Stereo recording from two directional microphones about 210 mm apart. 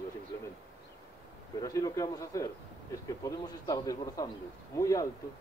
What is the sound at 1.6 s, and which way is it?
Speech, 15° left (ahead or behind).